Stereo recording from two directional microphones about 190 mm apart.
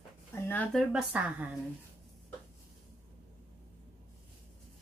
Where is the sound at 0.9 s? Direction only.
5° right (ahead or behind).